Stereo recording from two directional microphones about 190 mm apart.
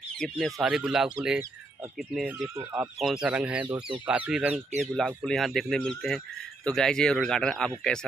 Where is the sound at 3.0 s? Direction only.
5° right (ahead or behind).